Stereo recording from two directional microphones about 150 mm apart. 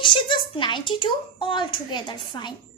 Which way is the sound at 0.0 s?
35° left (ahead or behind).